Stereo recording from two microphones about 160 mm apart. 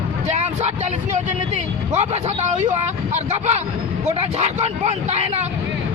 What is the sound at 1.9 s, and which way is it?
A man's voice, 45° right (ahead or behind).